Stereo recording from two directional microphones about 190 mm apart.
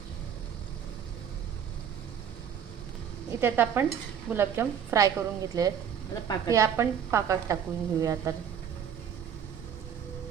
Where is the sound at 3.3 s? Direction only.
10° right (ahead or behind).